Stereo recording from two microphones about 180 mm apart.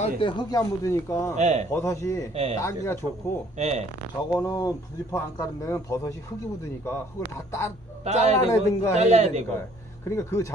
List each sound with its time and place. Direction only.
0.0 s speech: 30° left (ahead or behind)
1.3 s a man's voice: 40° right (ahead or behind)
1.7 s speech: 15° left (ahead or behind)
3.5 s a man's voice: 40° right (ahead or behind)
4.3 s speech: 20° left (ahead or behind)
8.0 s a man's voice: 35° right (ahead or behind)
8.4 s speech: 15° left (ahead or behind)
8.9 s a man's voice: 35° right (ahead or behind)
10.0 s speech: 15° left (ahead or behind)